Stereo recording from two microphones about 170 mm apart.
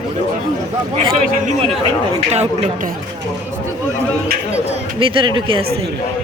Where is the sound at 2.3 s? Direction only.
40° right (ahead or behind).